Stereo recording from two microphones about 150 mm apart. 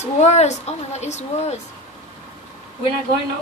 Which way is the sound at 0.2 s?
50° left (ahead or behind).